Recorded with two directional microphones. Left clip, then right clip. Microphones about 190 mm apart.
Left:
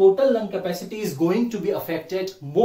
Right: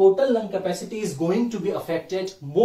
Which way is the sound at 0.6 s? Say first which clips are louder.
Right 1 dB; centre (ahead or behind).